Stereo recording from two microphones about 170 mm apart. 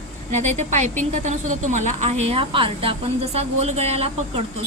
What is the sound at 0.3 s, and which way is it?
A woman's voice, 45° right (ahead or behind).